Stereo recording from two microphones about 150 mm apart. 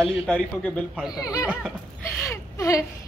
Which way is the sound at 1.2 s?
25° left (ahead or behind).